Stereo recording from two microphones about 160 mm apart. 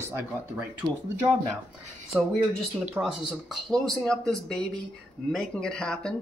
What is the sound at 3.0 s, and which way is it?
Speech, 15° right (ahead or behind).